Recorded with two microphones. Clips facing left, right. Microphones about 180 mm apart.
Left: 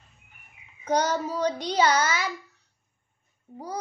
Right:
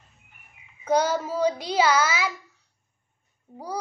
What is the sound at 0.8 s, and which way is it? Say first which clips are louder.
Speech: right 2 dB; 10° right (ahead or behind).